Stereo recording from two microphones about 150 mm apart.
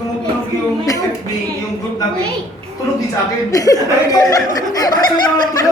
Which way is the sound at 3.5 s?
25° left (ahead or behind).